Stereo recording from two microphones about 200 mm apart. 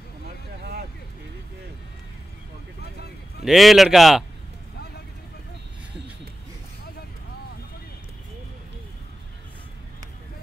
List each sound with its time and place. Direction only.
2.8 s vehicle: 55° left (ahead or behind)
3.4 s speech: centre (ahead or behind)